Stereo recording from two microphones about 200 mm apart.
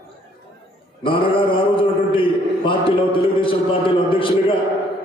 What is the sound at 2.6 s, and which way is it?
A man's voice, 25° left (ahead or behind).